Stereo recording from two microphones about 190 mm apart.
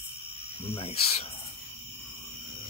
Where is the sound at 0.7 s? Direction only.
30° left (ahead or behind).